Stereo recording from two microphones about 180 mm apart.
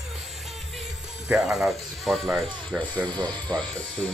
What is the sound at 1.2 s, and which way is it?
Speech, 5° right (ahead or behind).